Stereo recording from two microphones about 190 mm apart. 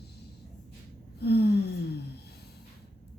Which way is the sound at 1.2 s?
60° left (ahead or behind).